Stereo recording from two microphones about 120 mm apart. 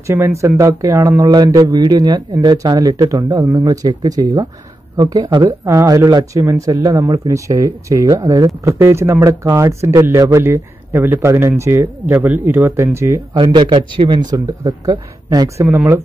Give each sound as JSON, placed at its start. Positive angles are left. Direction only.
{"t": 0.0, "sound": "speech", "side_deg": -20}
{"t": 13.4, "sound": "speech", "side_deg": -40}
{"t": 14.3, "sound": "speech", "side_deg": -30}